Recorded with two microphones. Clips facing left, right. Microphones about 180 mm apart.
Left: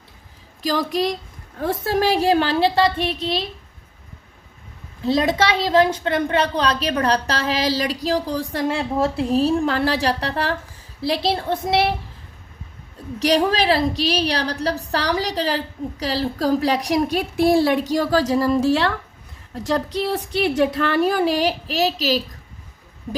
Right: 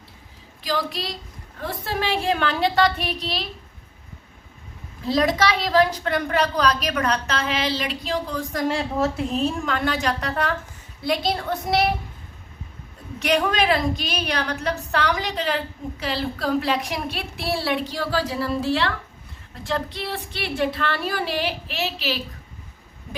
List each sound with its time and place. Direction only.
0.6 s a woman's voice: 45° left (ahead or behind); by 3.4 s 25° left (ahead or behind)
5.0 s a woman's voice: 25° left (ahead or behind)
13.1 s a woman's voice: 35° left (ahead or behind)